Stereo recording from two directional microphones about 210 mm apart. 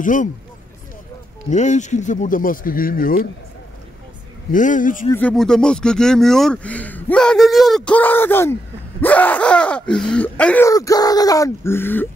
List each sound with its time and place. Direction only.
0.0 s speech: 40° left (ahead or behind)
1.5 s speech: 35° left (ahead or behind)
4.5 s speech: 40° left (ahead or behind)
5.1 s speech: 5° left (ahead or behind)